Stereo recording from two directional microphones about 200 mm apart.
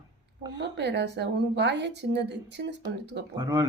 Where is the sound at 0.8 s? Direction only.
60° right (ahead or behind).